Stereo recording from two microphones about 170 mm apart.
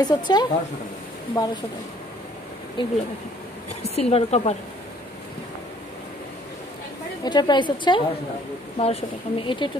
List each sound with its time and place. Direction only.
0.0 s a woman's voice: 25° left (ahead or behind)
2.8 s a woman's voice: 30° left (ahead or behind)
7.2 s a woman's voice: 25° left (ahead or behind)